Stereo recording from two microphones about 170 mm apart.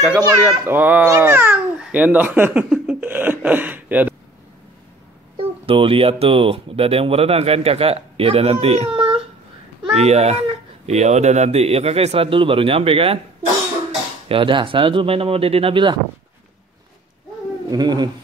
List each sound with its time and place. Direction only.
0.4 s speech: 10° right (ahead or behind)
5.4 s speech: 35° right (ahead or behind)
14.3 s speech: 30° right (ahead or behind)
17.6 s speech: 25° right (ahead or behind)